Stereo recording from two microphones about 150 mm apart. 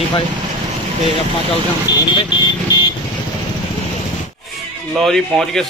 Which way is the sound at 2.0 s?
30° left (ahead or behind).